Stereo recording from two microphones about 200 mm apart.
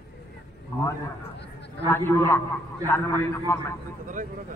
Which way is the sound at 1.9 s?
10° left (ahead or behind).